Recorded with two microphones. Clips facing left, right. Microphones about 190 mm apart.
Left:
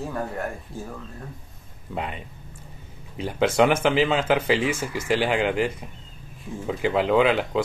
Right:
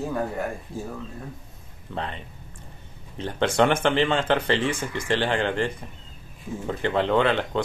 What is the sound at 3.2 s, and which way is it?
Speech, 5° left (ahead or behind).